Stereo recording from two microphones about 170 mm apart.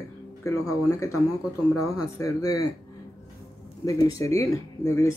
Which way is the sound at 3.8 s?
20° left (ahead or behind).